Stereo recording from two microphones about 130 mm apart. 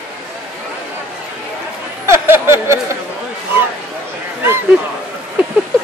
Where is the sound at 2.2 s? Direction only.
20° right (ahead or behind).